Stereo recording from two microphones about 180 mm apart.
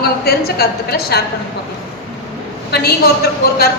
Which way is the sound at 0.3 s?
60° left (ahead or behind).